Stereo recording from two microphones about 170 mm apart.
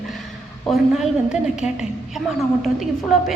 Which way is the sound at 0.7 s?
5° right (ahead or behind).